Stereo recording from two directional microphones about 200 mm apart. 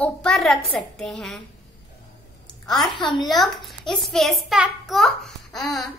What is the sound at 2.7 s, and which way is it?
A child's voice, centre (ahead or behind).